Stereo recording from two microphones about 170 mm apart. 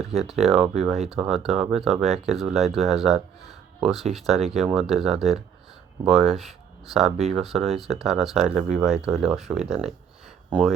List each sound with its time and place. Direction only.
0.1 s speech: centre (ahead or behind)